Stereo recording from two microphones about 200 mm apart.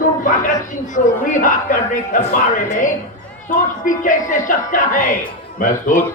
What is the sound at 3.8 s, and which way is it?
Speech, 40° left (ahead or behind).